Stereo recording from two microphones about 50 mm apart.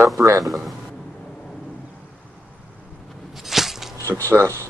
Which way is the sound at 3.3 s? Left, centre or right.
Centre.